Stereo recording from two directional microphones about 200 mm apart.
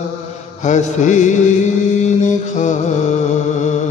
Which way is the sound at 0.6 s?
35° left (ahead or behind).